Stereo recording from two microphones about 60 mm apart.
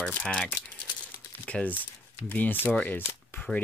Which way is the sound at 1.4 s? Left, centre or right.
Left.